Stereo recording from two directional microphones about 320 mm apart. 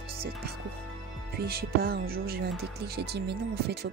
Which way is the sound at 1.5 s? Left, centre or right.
Right.